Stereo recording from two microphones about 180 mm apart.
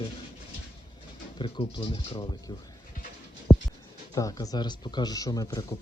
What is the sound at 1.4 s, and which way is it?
Speech, 30° left (ahead or behind).